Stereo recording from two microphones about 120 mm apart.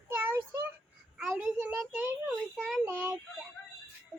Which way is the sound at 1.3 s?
20° right (ahead or behind).